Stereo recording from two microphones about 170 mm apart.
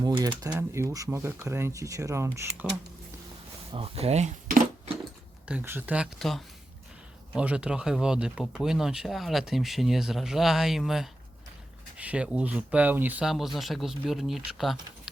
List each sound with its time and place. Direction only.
0.0 s speech: 25° right (ahead or behind)
3.7 s speech: 35° right (ahead or behind)
5.5 s speech: 10° right (ahead or behind)